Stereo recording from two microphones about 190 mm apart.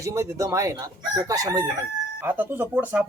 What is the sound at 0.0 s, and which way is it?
Speech, 15° right (ahead or behind).